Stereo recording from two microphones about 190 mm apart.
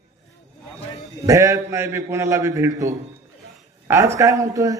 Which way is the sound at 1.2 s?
15° right (ahead or behind).